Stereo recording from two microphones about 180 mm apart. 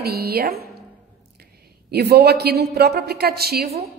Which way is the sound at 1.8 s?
60° right (ahead or behind).